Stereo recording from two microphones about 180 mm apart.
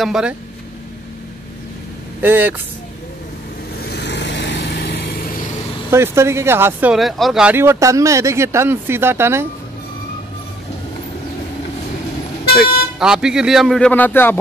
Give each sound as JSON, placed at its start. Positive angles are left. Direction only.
{"t": 0.0, "sound": "speech", "side_deg": -5}
{"t": 2.2, "sound": "speech", "side_deg": -10}
{"t": 3.8, "sound": "vehicle", "side_deg": 65}
{"t": 5.9, "sound": "speech", "side_deg": -15}
{"t": 12.5, "sound": "speech", "side_deg": -5}